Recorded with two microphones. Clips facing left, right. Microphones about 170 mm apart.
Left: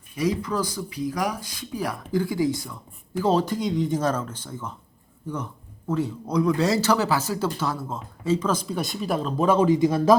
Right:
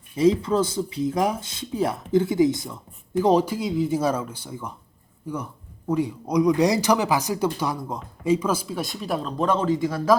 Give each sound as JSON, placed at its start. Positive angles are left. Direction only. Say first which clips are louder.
{"t": 0.2, "sound": "speech", "louder": "right 6 dB", "side_deg": -25}